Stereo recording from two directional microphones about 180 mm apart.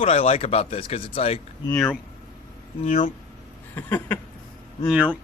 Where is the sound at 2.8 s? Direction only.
35° left (ahead or behind).